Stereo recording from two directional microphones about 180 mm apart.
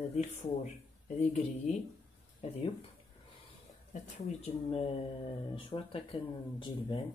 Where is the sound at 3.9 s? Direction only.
35° left (ahead or behind).